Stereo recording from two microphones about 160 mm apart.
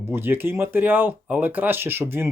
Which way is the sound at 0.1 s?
15° right (ahead or behind).